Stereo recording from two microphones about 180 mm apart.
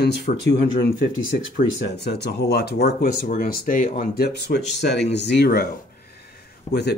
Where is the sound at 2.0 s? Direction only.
70° left (ahead or behind).